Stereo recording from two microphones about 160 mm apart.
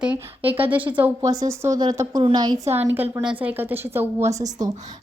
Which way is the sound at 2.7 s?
10° right (ahead or behind).